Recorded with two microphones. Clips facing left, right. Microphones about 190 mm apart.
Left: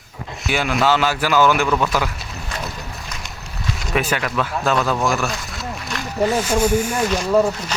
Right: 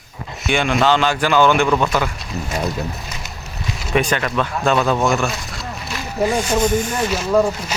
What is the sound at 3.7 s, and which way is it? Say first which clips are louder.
Speech: right 3 dB; centre (ahead or behind).